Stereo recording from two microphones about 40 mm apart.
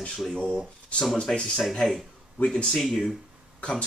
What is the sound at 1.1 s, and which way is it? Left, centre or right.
Speech, left.